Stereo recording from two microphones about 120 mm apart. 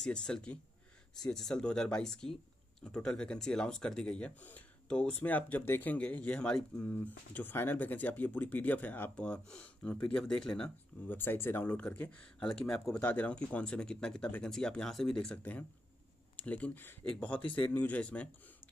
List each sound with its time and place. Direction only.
0.0 s speech: 5° left (ahead or behind)
17.5 s a man's voice: 45° left (ahead or behind)
17.7 s speech: 10° left (ahead or behind)